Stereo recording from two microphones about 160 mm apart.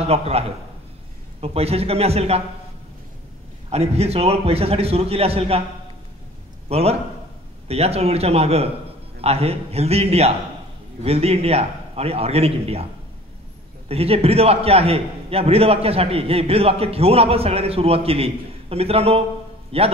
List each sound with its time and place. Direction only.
0.0 s a man's voice: 40° right (ahead or behind)
3.7 s a man's voice: 40° right (ahead or behind)
6.7 s a man's voice: 40° right (ahead or behind)
13.8 s a man's voice: 40° right (ahead or behind)